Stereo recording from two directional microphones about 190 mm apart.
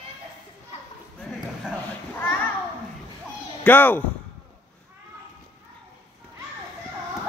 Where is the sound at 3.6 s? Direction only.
10° left (ahead or behind).